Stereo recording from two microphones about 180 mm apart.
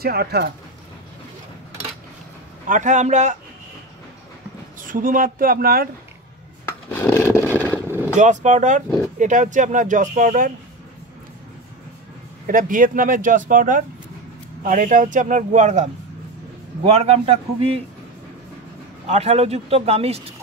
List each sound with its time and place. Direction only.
0.0 s speech: 60° right (ahead or behind)
2.7 s speech: 45° right (ahead or behind)
4.7 s speech: 50° right (ahead or behind)
6.9 s a sound: 10° left (ahead or behind)
7.9 s vehicle: 10° right (ahead or behind)
8.2 s speech: 40° right (ahead or behind)
12.4 s a man's voice: 50° right (ahead or behind)
19.0 s a man's voice: 35° right (ahead or behind)